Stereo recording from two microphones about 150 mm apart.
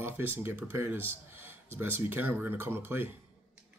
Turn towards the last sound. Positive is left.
turn(degrees=-15)  # may be behind; listen again after turning